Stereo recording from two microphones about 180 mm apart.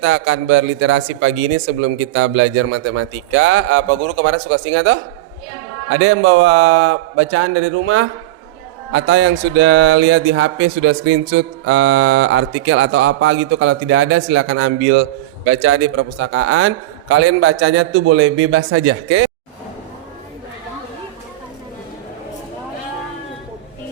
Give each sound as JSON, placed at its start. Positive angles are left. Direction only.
{"t": 0.0, "sound": "speech", "side_deg": -90}